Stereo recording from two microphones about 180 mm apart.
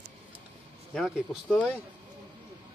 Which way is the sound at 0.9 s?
Centre (ahead or behind).